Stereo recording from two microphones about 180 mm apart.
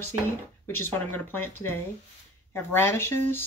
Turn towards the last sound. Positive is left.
turn(degrees=15)  # may be behind; listen again after turning